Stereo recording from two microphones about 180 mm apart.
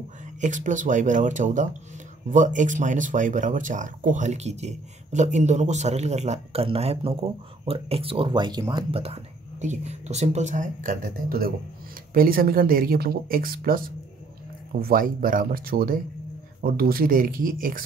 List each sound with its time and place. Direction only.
0.4 s speech: 45° right (ahead or behind)